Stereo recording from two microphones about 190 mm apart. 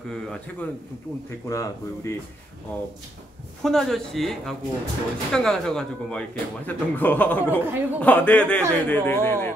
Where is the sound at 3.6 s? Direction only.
Centre (ahead or behind).